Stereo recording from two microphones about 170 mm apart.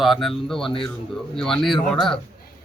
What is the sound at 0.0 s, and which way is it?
Speech, centre (ahead or behind).